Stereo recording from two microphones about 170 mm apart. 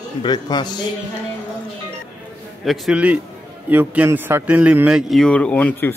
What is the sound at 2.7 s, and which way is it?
A man's voice, 5° right (ahead or behind).